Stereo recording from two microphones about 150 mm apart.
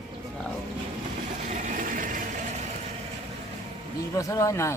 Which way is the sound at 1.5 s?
60° right (ahead or behind).